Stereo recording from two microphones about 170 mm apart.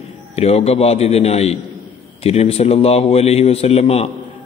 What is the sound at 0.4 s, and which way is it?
A man's voice, 35° left (ahead or behind).